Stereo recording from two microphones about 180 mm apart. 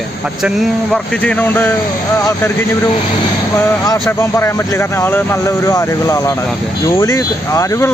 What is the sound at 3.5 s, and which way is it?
Speech, 15° left (ahead or behind).